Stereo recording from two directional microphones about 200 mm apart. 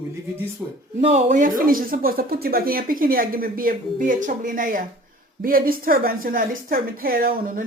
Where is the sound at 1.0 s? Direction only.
35° right (ahead or behind).